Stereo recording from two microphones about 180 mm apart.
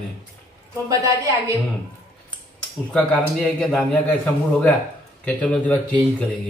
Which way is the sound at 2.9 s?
5° left (ahead or behind).